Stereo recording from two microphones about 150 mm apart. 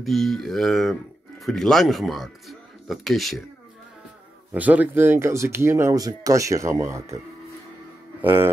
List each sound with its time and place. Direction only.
0.0 s mantra: centre (ahead or behind)
1.4 s speech: 5° left (ahead or behind)
4.6 s speech: 10° right (ahead or behind)
8.2 s music: 15° right (ahead or behind)